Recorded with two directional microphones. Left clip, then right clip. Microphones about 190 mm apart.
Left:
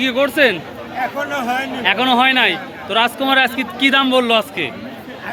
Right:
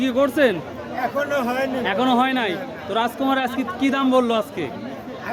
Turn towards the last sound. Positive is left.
turn(degrees=0)  # may be behind; listen again after turning